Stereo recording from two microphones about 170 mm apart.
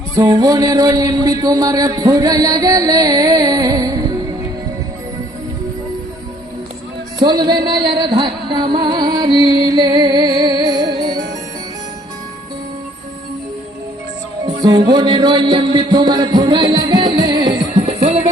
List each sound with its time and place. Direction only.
0.2 s a sound: 20° right (ahead or behind)
7.2 s music: 25° right (ahead or behind)
14.4 s music: 20° right (ahead or behind)
14.8 s a sound: 20° right (ahead or behind)
17.1 s music: 25° right (ahead or behind)
17.7 s music: 40° right (ahead or behind)